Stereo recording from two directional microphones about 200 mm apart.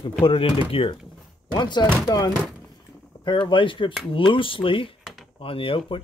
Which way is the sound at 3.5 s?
25° left (ahead or behind).